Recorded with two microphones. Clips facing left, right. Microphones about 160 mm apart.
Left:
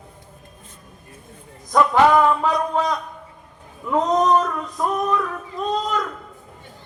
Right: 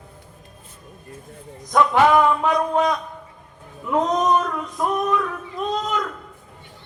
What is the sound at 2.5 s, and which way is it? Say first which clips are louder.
Speech: right 2 dB; 20° right (ahead or behind).